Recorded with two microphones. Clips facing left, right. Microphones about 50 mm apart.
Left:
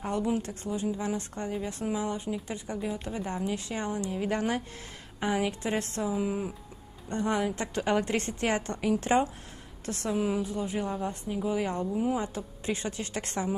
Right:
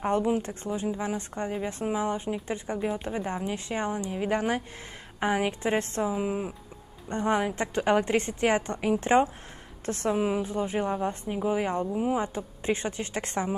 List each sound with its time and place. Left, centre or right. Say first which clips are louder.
0.0 s a woman's voice: right 4 dB; right
10.1 s speech: even; centre
10.4 s speech: right 3 dB; right